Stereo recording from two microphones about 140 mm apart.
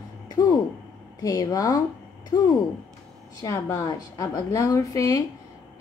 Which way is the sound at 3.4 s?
20° left (ahead or behind).